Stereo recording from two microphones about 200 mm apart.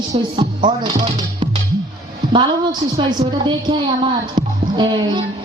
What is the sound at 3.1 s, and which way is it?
A woman's voice, 20° right (ahead or behind).